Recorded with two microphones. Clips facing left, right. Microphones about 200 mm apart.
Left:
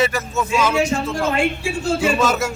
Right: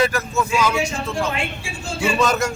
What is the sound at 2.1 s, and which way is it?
Speech, 5° left (ahead or behind).